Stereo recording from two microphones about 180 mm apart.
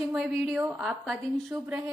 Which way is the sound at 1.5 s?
20° right (ahead or behind).